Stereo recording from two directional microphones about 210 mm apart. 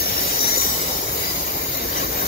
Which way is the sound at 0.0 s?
45° left (ahead or behind).